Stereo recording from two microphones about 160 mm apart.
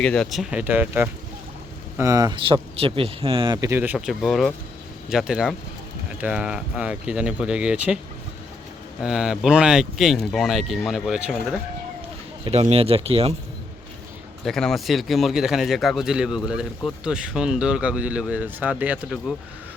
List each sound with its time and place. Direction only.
0.0 s speech: 5° left (ahead or behind)
0.6 s speech: 10° right (ahead or behind); by 3.7 s 30° right (ahead or behind)
3.7 s speech: 15° right (ahead or behind)
3.9 s speech: centre (ahead or behind)
9.0 s speech: 5° right (ahead or behind)
12.5 s speech: 40° right (ahead or behind)
14.4 s speech: 5° left (ahead or behind)